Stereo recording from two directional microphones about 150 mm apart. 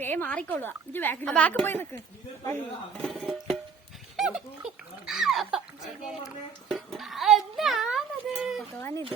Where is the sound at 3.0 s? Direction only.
Centre (ahead or behind).